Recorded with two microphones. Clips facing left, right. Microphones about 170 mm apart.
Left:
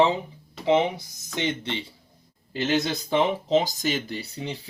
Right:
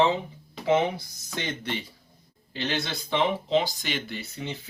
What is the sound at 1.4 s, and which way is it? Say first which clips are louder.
Speech: left 5 dB; 20° left (ahead or behind).